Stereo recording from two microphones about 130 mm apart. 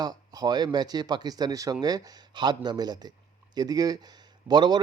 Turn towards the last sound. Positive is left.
turn(degrees=-35)  # may be behind; listen again after turning